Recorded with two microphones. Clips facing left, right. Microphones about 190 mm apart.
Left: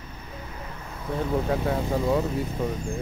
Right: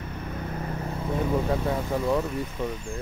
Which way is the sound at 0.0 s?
60° right (ahead or behind).